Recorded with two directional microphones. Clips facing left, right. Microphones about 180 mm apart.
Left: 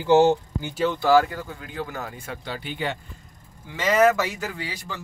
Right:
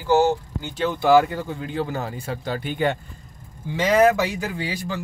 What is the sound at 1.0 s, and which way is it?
Speech, 20° right (ahead or behind).